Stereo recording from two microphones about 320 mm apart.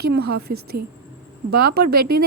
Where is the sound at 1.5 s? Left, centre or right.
Right.